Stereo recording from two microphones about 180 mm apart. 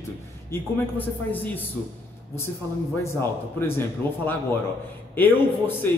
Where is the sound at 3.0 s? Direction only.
15° left (ahead or behind).